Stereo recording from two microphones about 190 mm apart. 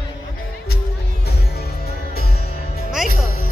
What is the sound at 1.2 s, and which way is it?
Music, 55° left (ahead or behind).